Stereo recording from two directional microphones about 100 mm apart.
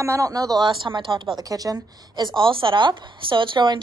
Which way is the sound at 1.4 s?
35° right (ahead or behind).